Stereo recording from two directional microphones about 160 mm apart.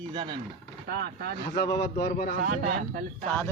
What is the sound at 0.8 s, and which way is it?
Speech, 90° right.